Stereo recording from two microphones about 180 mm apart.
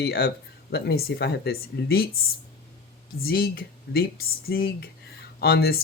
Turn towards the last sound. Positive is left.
turn(degrees=60)  # may be behind; listen again after turning